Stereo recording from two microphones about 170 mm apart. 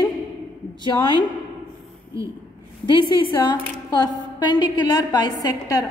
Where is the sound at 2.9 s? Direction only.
25° left (ahead or behind).